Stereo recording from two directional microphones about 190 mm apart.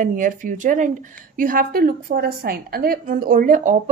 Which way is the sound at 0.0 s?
45° right (ahead or behind).